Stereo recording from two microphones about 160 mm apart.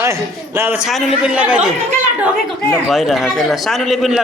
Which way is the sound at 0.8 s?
Centre (ahead or behind).